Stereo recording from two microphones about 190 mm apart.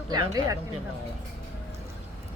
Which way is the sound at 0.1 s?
15° right (ahead or behind).